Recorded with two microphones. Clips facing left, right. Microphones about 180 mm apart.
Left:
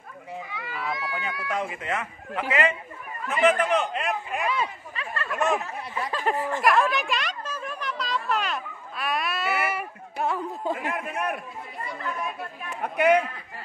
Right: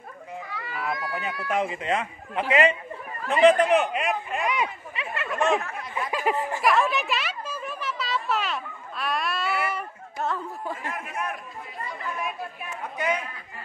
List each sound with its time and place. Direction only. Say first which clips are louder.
0.6 s children playing: right 2 dB; centre (ahead or behind)
1.5 s speech: right 4 dB; 20° right (ahead or behind); by 4.5 s centre (ahead or behind)
4.5 s a sound: right 1 dB; 15° right (ahead or behind)
5.3 s speech: right 1 dB; centre (ahead or behind)
6.0 s speech: right 1 dB; 10° right (ahead or behind)
6.6 s a sound: left 1 dB; centre (ahead or behind); by 10.9 s 15° left (ahead or behind)
10.9 s a man's voice: left 3 dB; 65° left (ahead or behind)
12.6 s a man's voice: left 7 dB; 65° left (ahead or behind)